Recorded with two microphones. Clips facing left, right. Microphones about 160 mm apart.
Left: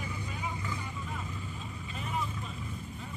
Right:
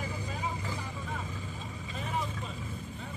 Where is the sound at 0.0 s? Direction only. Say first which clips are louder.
Right 2 dB; 35° right (ahead or behind).